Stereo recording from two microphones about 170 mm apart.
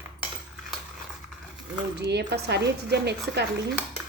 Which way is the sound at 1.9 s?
80° right.